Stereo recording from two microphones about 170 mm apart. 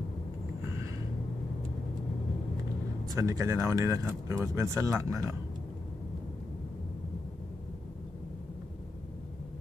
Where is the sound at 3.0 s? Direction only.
20° right (ahead or behind).